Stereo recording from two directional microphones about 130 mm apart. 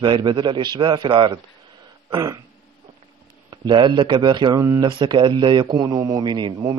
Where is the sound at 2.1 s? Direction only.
25° right (ahead or behind).